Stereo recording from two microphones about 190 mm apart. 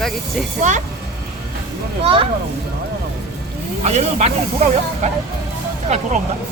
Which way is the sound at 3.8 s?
35° right (ahead or behind).